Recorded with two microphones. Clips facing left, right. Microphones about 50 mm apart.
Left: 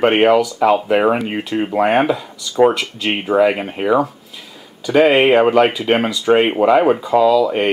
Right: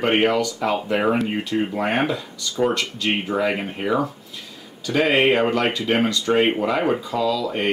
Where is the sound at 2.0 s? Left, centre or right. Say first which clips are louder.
Left 5 dB; centre.